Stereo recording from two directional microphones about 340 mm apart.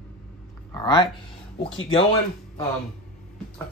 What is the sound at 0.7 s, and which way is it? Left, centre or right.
Speech, centre.